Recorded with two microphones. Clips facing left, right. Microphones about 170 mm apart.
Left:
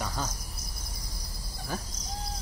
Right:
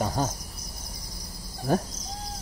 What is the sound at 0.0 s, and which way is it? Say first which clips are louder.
Insect: right 7 dB; 45° right (ahead or behind).